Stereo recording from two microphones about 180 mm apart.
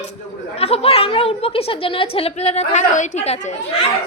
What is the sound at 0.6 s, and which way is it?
A woman's voice, 35° left (ahead or behind).